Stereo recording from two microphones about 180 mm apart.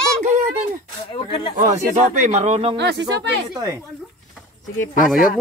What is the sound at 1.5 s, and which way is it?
Speech, 45° right (ahead or behind).